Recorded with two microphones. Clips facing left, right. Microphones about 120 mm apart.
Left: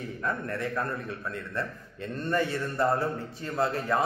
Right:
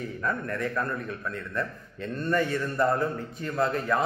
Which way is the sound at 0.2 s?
30° left (ahead or behind).